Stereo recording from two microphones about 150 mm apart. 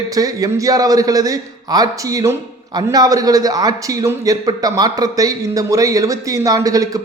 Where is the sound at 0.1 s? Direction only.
25° right (ahead or behind).